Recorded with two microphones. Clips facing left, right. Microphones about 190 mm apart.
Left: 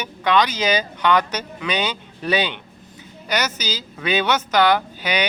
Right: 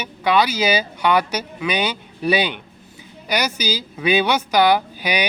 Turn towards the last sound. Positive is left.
turn(degrees=-10)  # may be behind; listen again after turning